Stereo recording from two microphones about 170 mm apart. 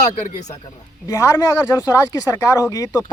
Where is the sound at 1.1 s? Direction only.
15° left (ahead or behind).